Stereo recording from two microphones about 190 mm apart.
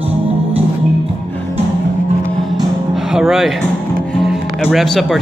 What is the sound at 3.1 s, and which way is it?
Music, centre (ahead or behind).